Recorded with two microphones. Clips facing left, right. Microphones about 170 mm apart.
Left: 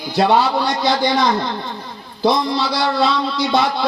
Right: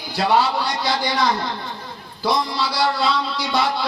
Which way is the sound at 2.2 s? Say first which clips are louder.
Left 5 dB; 20° left (ahead or behind).